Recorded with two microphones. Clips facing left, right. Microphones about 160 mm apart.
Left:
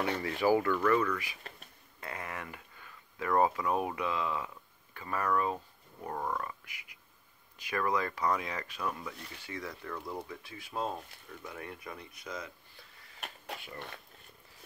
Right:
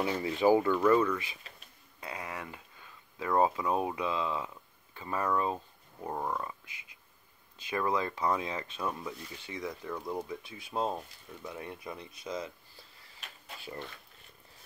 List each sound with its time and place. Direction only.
0.2 s speech: 20° right (ahead or behind)